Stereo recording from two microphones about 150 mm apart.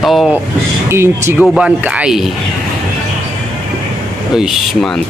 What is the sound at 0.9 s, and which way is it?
Speech, 15° right (ahead or behind).